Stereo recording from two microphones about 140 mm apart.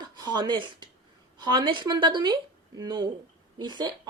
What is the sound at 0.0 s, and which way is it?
Speech, 30° right (ahead or behind).